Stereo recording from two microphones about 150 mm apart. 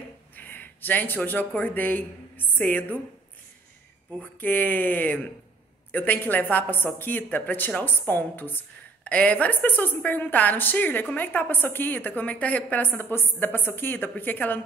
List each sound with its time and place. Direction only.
0.4 s speech: 15° left (ahead or behind)
4.2 s a woman's voice: 10° left (ahead or behind)